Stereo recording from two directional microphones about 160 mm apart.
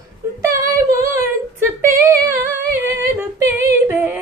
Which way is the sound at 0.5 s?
20° right (ahead or behind).